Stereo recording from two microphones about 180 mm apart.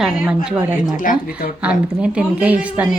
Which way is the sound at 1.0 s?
50° left (ahead or behind).